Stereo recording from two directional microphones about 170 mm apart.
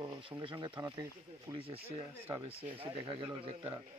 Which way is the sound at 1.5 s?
35° right (ahead or behind).